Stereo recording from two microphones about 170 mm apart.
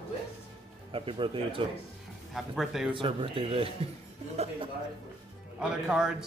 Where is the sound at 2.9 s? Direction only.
30° right (ahead or behind).